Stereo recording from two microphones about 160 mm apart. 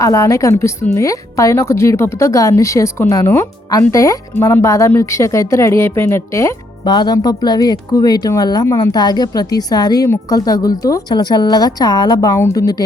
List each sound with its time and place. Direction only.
0.0 s speech: 20° left (ahead or behind)